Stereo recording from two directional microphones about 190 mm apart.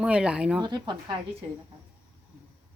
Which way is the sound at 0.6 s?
25° right (ahead or behind).